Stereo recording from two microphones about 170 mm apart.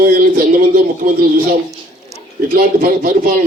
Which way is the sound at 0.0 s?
55° right (ahead or behind).